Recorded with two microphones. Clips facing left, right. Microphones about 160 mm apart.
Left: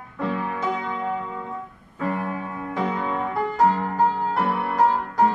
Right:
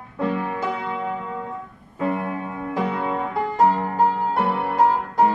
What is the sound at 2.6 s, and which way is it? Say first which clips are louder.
Music: right 2 dB; 5° right (ahead or behind).